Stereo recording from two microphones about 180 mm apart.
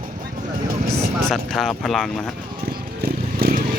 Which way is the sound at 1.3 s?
Centre (ahead or behind).